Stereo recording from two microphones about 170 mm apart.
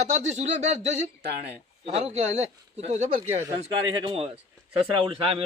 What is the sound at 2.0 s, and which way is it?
Speech, 40° right (ahead or behind).